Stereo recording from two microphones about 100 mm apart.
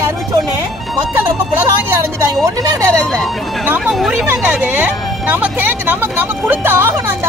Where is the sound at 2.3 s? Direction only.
35° right (ahead or behind).